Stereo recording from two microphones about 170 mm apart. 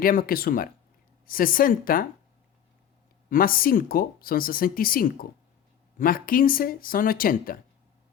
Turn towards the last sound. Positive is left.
turn(degrees=55)  # may be behind; listen again after turning